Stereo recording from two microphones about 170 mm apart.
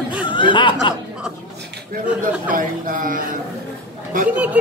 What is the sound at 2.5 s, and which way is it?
Speech, 55° right (ahead or behind).